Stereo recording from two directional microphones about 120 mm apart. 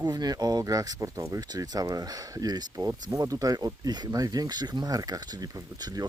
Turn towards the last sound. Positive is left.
turn(degrees=-30)  # may be behind; listen again after turning